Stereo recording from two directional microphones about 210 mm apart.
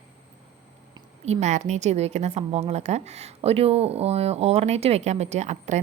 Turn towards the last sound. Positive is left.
turn(degrees=-35)  # may be behind; listen again after turning